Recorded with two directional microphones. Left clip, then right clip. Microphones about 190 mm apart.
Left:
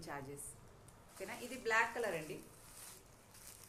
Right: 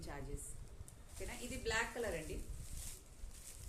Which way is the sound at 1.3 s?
25° right (ahead or behind).